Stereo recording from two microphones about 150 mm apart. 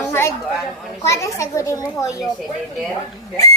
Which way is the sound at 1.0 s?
20° left (ahead or behind).